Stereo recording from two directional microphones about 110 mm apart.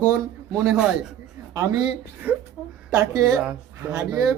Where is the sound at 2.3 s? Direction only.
15° right (ahead or behind).